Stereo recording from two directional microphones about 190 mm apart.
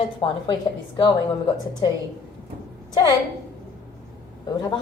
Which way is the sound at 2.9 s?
20° left (ahead or behind).